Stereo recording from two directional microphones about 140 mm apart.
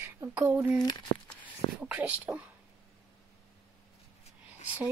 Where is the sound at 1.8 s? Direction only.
10° right (ahead or behind).